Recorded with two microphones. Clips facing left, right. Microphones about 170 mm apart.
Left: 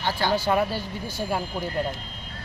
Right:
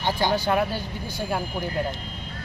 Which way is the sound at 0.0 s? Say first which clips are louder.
Right 1 dB; 15° right (ahead or behind).